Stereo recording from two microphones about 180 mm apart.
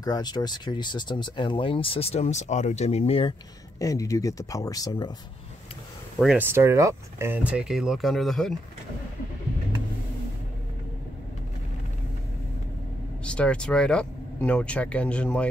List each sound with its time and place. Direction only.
0.0 s speech: 25° left (ahead or behind)
3.8 s speech: 20° left (ahead or behind)
6.1 s speech: 5° right (ahead or behind)
13.2 s speech: 5° left (ahead or behind)